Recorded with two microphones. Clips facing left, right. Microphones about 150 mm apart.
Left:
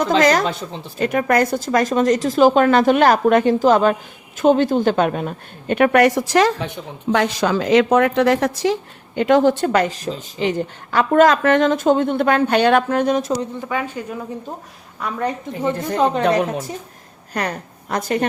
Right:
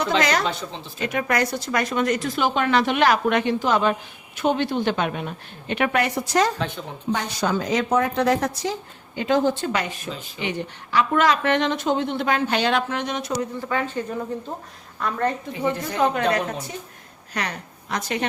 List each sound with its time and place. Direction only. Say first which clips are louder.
0.0 s a woman's voice: left 6 dB; 45° left (ahead or behind)
10.0 s a woman's voice: left 8 dB; 35° left (ahead or behind)
13.4 s speech: left 1 dB; 15° left (ahead or behind)
16.2 s a woman's voice: left 5 dB; 50° left (ahead or behind)